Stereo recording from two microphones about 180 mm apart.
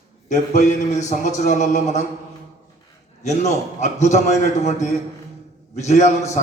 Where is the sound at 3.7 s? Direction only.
40° left (ahead or behind).